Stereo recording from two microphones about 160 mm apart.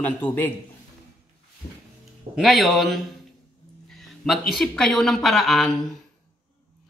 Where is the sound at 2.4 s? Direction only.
Centre (ahead or behind).